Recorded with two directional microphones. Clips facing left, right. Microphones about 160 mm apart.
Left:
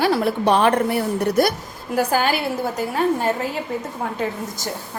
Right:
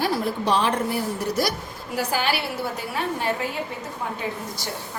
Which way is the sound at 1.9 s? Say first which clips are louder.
Left 5 dB; 45° left (ahead or behind).